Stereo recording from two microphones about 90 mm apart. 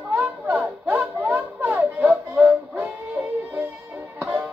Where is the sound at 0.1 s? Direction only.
15° right (ahead or behind).